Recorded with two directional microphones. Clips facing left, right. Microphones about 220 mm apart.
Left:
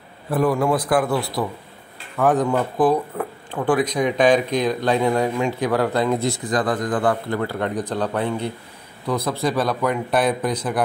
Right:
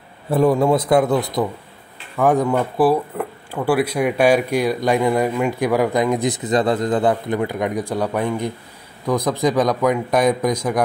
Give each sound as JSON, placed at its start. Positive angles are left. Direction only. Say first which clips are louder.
{"t": 0.3, "sound": "a man's voice", "louder": "right 4 dB", "side_deg": -25}